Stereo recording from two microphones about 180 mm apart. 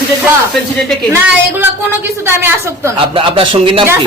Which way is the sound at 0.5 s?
Centre (ahead or behind).